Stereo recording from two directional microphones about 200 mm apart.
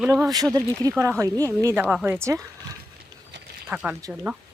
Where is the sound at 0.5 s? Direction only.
15° right (ahead or behind).